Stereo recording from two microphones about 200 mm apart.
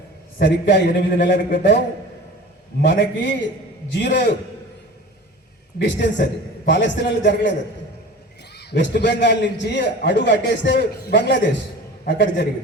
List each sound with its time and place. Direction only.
0.3 s a man's voice: 60° left (ahead or behind)
2.8 s a man's voice: 60° left (ahead or behind)
5.8 s a man's voice: 60° left (ahead or behind)
8.5 s a sound: 60° left (ahead or behind)
9.0 s a man's voice: 60° left (ahead or behind)